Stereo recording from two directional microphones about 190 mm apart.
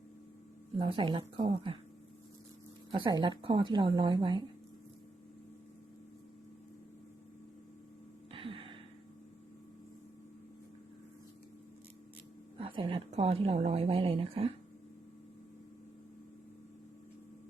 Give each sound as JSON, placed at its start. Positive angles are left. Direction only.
{"t": 0.8, "sound": "a woman's voice", "side_deg": -30}
{"t": 2.9, "sound": "a woman's voice", "side_deg": -25}
{"t": 8.3, "sound": "a sound", "side_deg": -30}
{"t": 12.5, "sound": "a woman's voice", "side_deg": -30}